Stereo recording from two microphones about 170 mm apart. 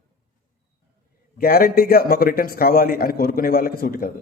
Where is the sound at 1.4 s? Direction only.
65° left (ahead or behind).